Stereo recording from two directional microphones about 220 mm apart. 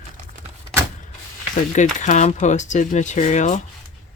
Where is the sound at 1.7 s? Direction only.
35° left (ahead or behind).